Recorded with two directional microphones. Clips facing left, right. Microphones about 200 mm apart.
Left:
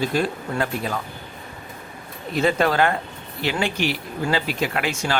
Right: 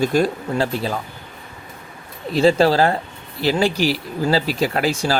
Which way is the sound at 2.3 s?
30° right (ahead or behind).